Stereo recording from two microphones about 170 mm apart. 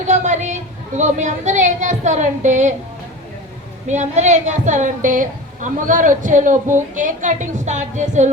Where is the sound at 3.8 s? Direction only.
45° right (ahead or behind).